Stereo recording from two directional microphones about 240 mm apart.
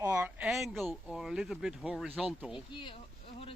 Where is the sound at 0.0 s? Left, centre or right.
Centre.